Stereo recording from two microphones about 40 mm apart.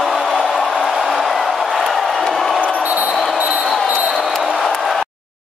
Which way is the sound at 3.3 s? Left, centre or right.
Right.